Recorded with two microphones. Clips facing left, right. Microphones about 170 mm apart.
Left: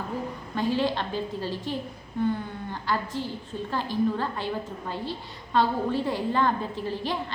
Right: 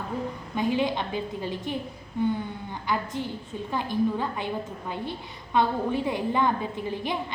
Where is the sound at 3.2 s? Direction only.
15° right (ahead or behind).